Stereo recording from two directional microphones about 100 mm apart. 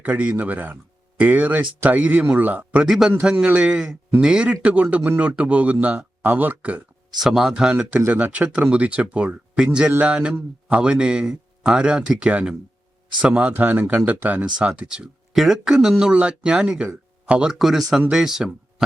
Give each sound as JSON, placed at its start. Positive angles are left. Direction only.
{"t": 0.0, "sound": "speech", "side_deg": -15}
{"t": 7.2, "sound": "speech", "side_deg": -5}